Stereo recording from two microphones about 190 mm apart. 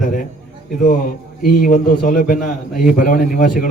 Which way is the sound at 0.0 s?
45° left (ahead or behind).